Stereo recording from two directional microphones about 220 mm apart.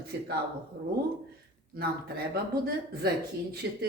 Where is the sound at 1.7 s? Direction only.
45° right (ahead or behind).